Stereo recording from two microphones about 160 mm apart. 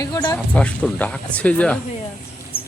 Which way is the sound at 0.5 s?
5° left (ahead or behind).